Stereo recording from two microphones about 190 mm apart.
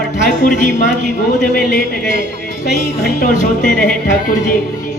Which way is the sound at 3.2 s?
40° left (ahead or behind).